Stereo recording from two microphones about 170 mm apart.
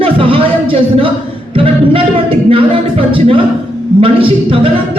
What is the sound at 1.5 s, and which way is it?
Speech, 30° right (ahead or behind).